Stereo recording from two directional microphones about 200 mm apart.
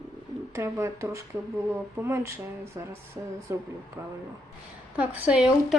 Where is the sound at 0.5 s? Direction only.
15° right (ahead or behind).